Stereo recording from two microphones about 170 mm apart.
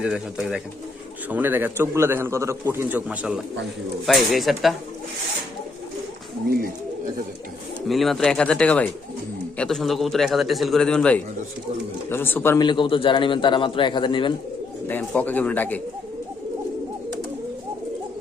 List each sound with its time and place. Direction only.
0.0 s a man's voice: 5° right (ahead or behind)
6.5 s bird: 60° right (ahead or behind)
7.9 s a man's voice: centre (ahead or behind)
12.5 s a man's voice: 25° left (ahead or behind)
14.8 s speech: 10° left (ahead or behind)